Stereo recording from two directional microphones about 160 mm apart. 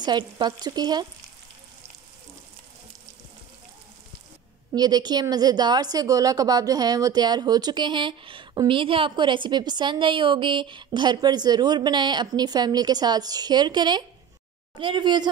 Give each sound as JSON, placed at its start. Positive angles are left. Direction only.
{"t": 0.0, "sound": "speech", "side_deg": -25}
{"t": 4.7, "sound": "speech", "side_deg": -25}